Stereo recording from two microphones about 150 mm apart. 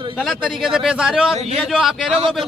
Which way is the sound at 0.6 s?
5° right (ahead or behind).